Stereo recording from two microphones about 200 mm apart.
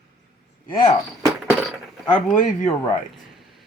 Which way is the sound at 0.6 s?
20° left (ahead or behind).